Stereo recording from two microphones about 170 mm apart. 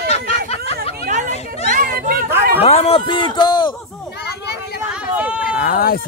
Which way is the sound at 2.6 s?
35° left (ahead or behind).